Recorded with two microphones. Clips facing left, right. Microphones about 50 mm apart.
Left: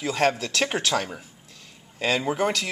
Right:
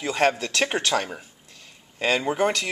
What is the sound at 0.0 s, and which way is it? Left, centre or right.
Speech, centre.